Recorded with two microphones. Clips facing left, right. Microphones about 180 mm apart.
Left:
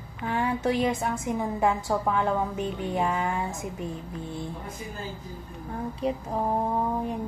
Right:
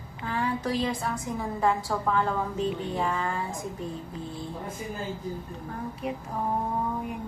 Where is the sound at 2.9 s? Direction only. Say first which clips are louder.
Left 2 dB; 10° left (ahead or behind).